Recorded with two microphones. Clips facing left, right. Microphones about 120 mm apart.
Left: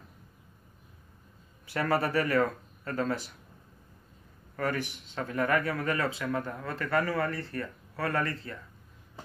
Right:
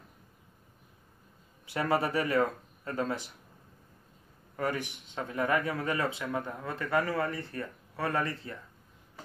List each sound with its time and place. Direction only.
1.7 s speech: 20° right (ahead or behind)
4.6 s speech: 20° right (ahead or behind)